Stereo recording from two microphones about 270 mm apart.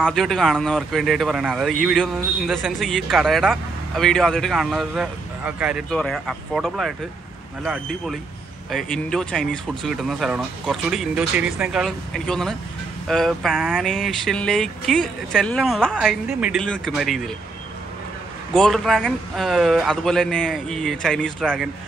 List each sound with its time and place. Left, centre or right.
0.0 s speech: centre
18.5 s speech: centre